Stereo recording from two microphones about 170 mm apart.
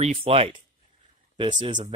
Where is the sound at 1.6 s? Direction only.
35° right (ahead or behind).